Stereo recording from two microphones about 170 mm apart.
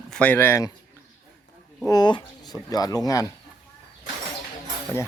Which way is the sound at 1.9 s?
25° left (ahead or behind).